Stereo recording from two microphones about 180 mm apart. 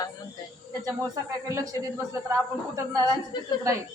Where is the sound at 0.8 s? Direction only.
20° right (ahead or behind).